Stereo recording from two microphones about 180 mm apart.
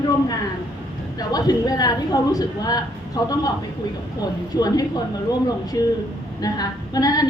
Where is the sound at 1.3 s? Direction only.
20° left (ahead or behind).